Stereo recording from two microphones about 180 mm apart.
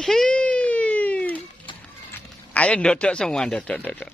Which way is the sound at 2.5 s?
10° left (ahead or behind).